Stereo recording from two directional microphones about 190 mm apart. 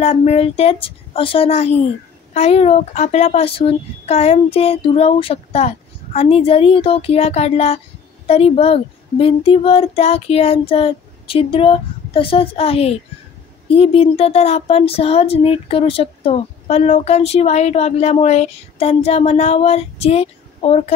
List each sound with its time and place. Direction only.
0.0 s speech: 35° left (ahead or behind)